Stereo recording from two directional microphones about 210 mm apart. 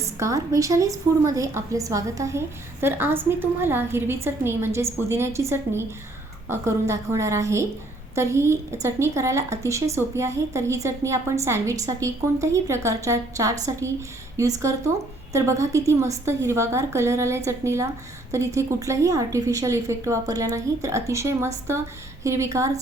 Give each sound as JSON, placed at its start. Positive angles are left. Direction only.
{"t": 0.0, "sound": "a woman's voice", "side_deg": -15}